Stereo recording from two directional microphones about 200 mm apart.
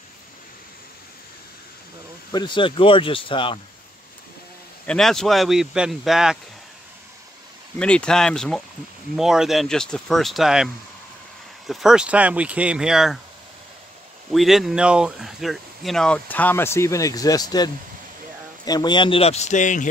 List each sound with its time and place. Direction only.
2.3 s speech: 25° left (ahead or behind)
4.8 s speech: centre (ahead or behind)
7.8 s speech: 5° left (ahead or behind)
14.3 s speech: centre (ahead or behind); by 17.6 s 20° left (ahead or behind)
18.7 s speech: 20° left (ahead or behind); by 19.9 s 40° left (ahead or behind)